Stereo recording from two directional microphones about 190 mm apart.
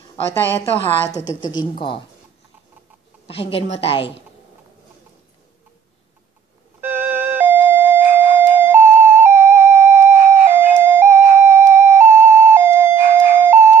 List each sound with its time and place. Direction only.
0.3 s a woman's voice: 10° left (ahead or behind)
1.1 s speech: 20° left (ahead or behind)
3.3 s a woman's voice: 30° left (ahead or behind)
6.8 s music: 10° right (ahead or behind)